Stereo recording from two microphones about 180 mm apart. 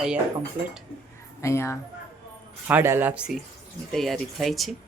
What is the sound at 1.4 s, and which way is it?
Speech, 15° left (ahead or behind).